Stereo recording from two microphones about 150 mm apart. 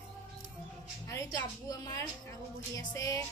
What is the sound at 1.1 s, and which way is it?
A woman's voice, 20° left (ahead or behind).